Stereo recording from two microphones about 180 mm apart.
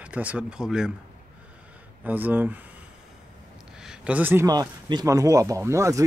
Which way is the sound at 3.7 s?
5° right (ahead or behind).